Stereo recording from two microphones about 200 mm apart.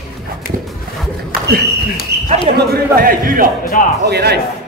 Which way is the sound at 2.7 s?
45° right (ahead or behind).